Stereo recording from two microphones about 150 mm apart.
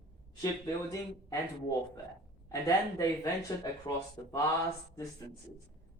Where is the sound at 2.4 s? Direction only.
20° left (ahead or behind).